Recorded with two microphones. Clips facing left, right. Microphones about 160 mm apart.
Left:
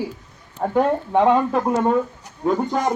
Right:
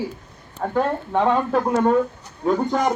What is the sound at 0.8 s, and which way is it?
Speech, 15° left (ahead or behind).